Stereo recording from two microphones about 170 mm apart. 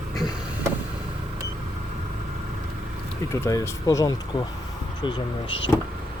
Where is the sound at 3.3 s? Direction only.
20° left (ahead or behind).